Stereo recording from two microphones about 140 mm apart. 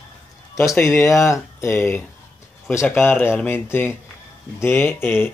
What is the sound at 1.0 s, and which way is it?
Speech, 20° left (ahead or behind).